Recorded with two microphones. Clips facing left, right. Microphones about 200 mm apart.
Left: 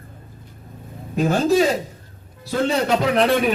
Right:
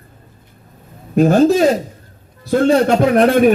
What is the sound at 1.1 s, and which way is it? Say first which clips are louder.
A man's voice: right 6 dB; 55° right (ahead or behind).